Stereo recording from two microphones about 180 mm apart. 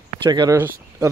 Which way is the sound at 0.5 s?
10° right (ahead or behind).